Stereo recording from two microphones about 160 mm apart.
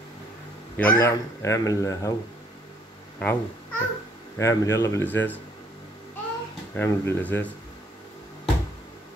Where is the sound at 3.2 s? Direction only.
10° left (ahead or behind).